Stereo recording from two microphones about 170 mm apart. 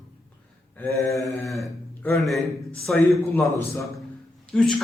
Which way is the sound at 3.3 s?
15° left (ahead or behind).